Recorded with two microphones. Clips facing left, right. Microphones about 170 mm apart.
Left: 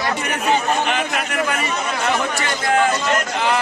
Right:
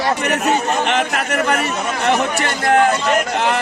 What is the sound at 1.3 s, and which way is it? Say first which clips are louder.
Speech: right 5 dB; 65° right (ahead or behind).